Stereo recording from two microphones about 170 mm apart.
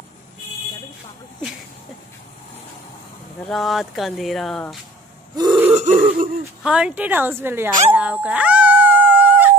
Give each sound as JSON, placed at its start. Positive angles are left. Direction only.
{"t": 3.4, "sound": "speech", "side_deg": 0}
{"t": 5.3, "sound": "throat clearing", "side_deg": -25}
{"t": 5.7, "sound": "throat clearing", "side_deg": -45}
{"t": 6.6, "sound": "speech", "side_deg": -5}